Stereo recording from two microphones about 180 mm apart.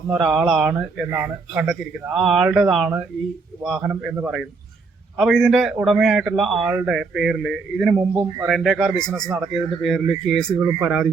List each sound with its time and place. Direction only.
0.1 s a man's voice: 5° right (ahead or behind)
10.6 s speech: 15° right (ahead or behind)
10.8 s a man's voice: centre (ahead or behind)